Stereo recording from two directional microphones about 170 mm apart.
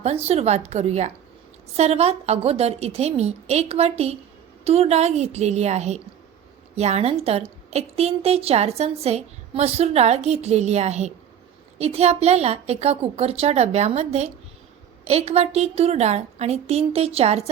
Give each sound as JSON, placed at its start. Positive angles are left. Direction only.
{"t": 0.3, "sound": "a woman's voice", "side_deg": -40}